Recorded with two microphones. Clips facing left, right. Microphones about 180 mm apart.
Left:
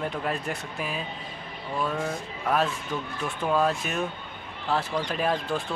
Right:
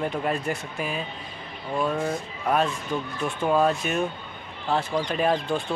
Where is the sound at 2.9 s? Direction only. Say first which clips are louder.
Right 3 dB; 20° right (ahead or behind).